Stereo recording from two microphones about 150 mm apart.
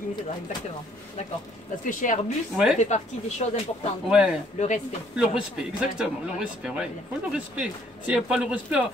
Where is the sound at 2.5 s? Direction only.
5° right (ahead or behind).